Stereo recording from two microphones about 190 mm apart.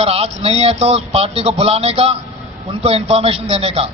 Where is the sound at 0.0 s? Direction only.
30° right (ahead or behind).